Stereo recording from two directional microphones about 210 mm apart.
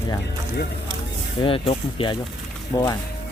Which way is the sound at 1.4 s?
25° left (ahead or behind).